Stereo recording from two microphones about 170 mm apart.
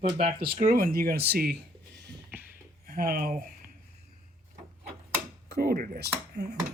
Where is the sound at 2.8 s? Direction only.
60° right (ahead or behind).